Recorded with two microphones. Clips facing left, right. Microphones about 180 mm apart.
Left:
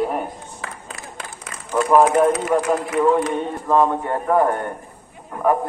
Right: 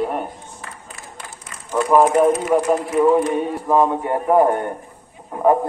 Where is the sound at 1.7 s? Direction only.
Centre (ahead or behind).